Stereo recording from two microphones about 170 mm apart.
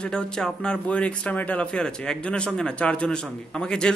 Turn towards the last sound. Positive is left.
turn(degrees=5)  # may be behind; listen again after turning